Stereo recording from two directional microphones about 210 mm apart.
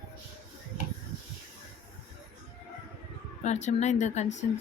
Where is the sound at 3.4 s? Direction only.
35° left (ahead or behind).